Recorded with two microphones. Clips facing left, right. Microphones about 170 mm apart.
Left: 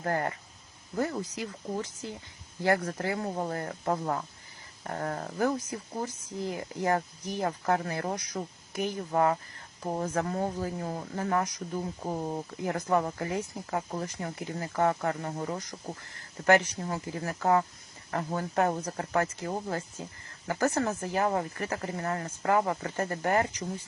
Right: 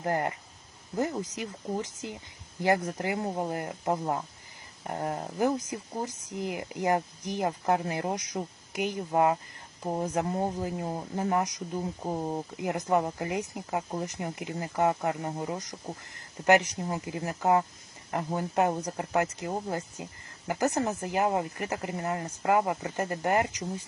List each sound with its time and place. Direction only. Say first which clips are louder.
0.0 s speech: right 1 dB; 20° right (ahead or behind)